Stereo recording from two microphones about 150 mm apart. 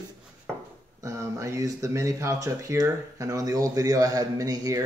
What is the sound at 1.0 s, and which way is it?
Speech, 20° right (ahead or behind).